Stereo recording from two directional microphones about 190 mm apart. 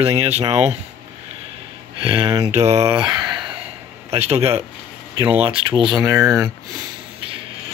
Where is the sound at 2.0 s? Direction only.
25° right (ahead or behind).